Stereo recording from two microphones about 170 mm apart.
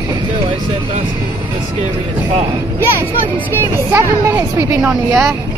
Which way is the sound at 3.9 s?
15° right (ahead or behind).